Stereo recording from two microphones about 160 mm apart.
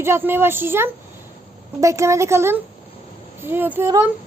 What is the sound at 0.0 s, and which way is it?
A child's voice, 15° right (ahead or behind).